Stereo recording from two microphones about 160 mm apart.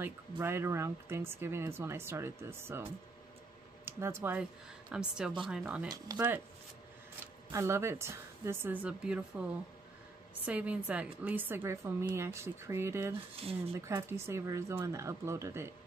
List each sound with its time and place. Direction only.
0.0 s a woman's voice: 15° right (ahead or behind)
7.5 s speech: 15° right (ahead or behind)
13.4 s speech: 40° right (ahead or behind)
13.7 s speech: 15° right (ahead or behind)